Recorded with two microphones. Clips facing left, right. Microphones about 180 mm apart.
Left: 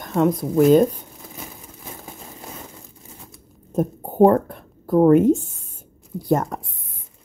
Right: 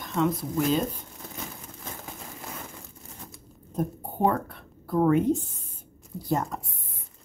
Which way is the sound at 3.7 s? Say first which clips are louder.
Left 8 dB; 45° left (ahead or behind).